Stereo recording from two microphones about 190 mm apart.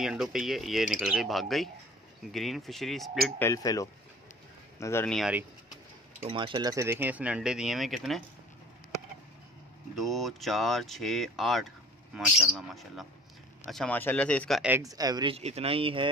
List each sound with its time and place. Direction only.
0.0 s speech: 5° right (ahead or behind)
3.3 s speech: 15° left (ahead or behind)
5.1 s speech: centre (ahead or behind)
6.2 s speech: 25° right (ahead or behind); by 8.2 s centre (ahead or behind)
9.9 s speech: centre (ahead or behind)
14.6 s speech: 15° right (ahead or behind); by 16.1 s 30° right (ahead or behind)